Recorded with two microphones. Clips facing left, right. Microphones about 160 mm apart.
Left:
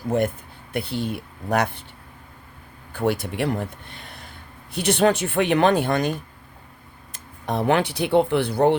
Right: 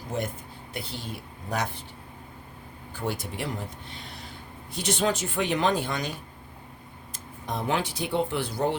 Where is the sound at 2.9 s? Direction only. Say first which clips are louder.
Left 9 dB; 65° left (ahead or behind).